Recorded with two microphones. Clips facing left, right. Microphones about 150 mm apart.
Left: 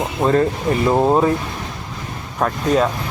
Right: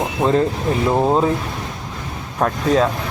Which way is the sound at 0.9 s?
5° left (ahead or behind).